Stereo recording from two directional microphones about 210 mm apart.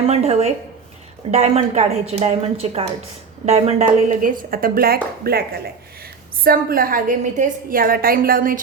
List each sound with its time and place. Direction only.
0.0 s a woman's voice: 30° right (ahead or behind)